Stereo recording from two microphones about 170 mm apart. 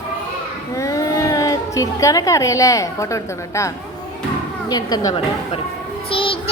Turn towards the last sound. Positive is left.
turn(degrees=30)  # may be behind; listen again after turning